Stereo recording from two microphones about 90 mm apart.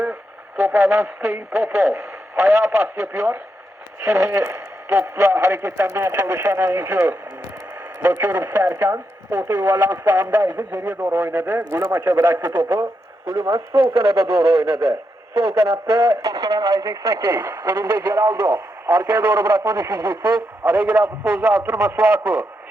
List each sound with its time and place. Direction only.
0.0 s radio: 20° right (ahead or behind)
1.3 s speech: 25° right (ahead or behind)
8.2 s speech: 25° right (ahead or behind)
13.3 s speech: 40° right (ahead or behind)
13.7 s speech: 85° right
14.7 s a man's voice: 70° right (ahead or behind)
16.2 s speech: 40° right (ahead or behind); by 22.4 s 20° right (ahead or behind)